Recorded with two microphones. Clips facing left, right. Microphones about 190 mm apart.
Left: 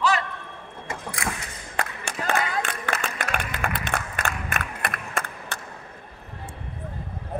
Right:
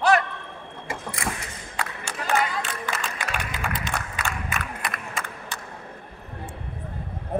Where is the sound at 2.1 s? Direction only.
65° left (ahead or behind).